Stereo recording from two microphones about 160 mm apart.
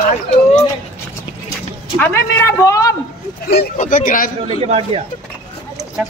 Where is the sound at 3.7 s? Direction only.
50° left (ahead or behind).